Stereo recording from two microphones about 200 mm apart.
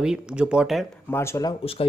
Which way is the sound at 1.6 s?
30° left (ahead or behind).